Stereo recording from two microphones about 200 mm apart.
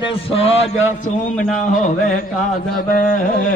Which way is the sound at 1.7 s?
40° left (ahead or behind).